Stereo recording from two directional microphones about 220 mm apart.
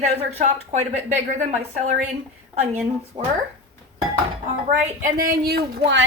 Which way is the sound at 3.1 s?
20° right (ahead or behind).